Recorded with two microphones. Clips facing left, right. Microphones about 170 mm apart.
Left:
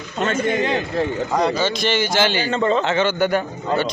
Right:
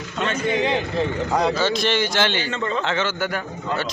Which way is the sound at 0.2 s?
50° left (ahead or behind).